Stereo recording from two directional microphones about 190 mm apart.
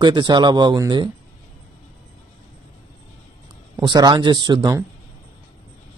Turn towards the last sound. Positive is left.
turn(degrees=-20)  # may be behind; listen again after turning